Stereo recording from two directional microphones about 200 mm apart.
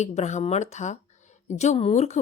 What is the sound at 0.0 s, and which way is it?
Speech, 35° left (ahead or behind).